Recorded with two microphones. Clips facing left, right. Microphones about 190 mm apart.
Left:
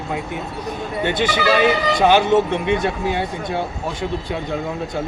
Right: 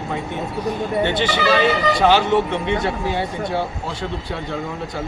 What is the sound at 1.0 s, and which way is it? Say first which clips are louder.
Speech: left 3 dB; 15° left (ahead or behind).